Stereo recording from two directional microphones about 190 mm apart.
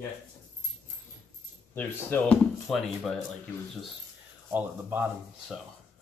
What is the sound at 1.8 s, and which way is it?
Speech, 10° left (ahead or behind).